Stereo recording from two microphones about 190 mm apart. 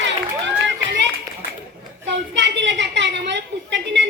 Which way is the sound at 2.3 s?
70° right (ahead or behind).